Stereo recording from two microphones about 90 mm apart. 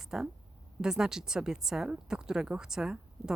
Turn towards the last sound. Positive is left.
turn(degrees=-10)  # may be behind; listen again after turning